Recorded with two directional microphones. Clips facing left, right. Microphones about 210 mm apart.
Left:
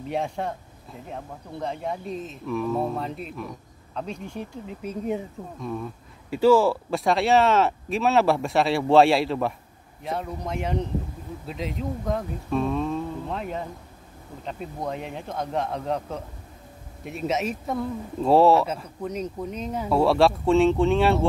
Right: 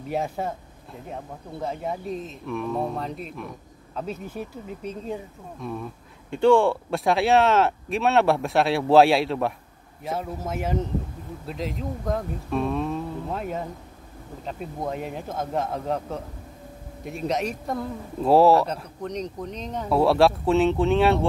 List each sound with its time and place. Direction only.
0.1 s speech: 5° right (ahead or behind)
4.8 s speech: 15° left (ahead or behind)
5.6 s speech: centre (ahead or behind)